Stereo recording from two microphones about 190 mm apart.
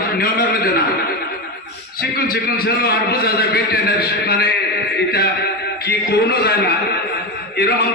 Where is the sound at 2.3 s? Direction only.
55° left (ahead or behind).